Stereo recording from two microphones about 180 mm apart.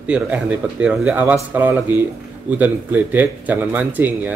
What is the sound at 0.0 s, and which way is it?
Speech, 5° right (ahead or behind).